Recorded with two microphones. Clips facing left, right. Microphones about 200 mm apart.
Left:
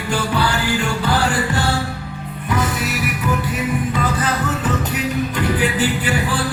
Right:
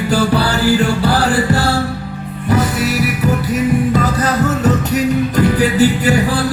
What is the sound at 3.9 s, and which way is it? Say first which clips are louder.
Music: right 5 dB; 40° right (ahead or behind).